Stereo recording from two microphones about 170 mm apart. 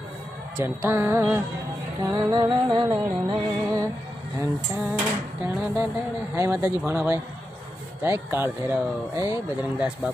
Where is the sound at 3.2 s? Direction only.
20° right (ahead or behind).